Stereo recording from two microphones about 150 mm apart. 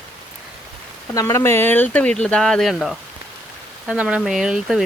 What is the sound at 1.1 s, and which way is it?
Speech, 15° left (ahead or behind).